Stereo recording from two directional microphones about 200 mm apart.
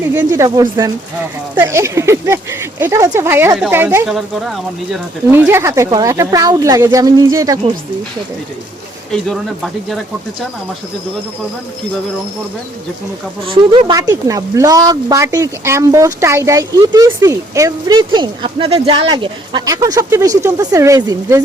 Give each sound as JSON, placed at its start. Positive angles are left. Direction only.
{"t": 0.1, "sound": "speech", "side_deg": -15}
{"t": 9.1, "sound": "speech", "side_deg": 0}
{"t": 13.5, "sound": "speech", "side_deg": -25}